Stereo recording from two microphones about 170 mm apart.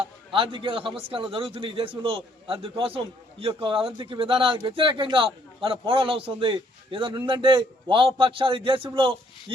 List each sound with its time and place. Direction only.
0.0 s speech: 30° right (ahead or behind)